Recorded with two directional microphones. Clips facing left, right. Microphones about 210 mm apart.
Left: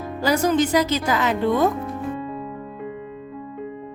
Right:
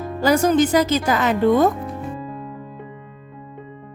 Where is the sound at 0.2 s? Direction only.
50° right (ahead or behind).